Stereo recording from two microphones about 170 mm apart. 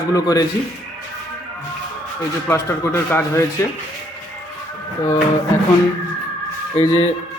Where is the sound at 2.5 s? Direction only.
15° left (ahead or behind).